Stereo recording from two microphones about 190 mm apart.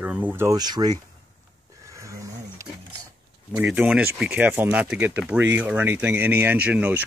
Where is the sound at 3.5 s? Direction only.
5° right (ahead or behind).